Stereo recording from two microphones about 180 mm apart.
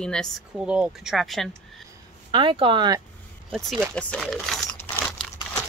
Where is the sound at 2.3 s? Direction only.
25° right (ahead or behind).